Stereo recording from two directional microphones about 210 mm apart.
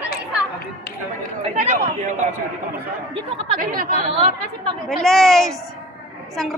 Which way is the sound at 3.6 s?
40° right (ahead or behind).